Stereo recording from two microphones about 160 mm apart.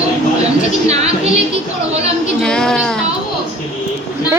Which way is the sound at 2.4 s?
5° left (ahead or behind).